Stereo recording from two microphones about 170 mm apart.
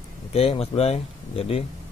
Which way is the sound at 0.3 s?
35° left (ahead or behind).